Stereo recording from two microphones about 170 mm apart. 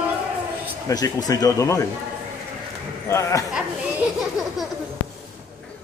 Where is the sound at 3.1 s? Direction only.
15° left (ahead or behind).